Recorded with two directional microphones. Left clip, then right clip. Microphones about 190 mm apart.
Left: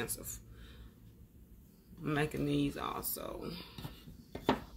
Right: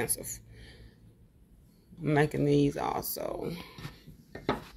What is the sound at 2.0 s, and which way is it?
Speech, 25° right (ahead or behind).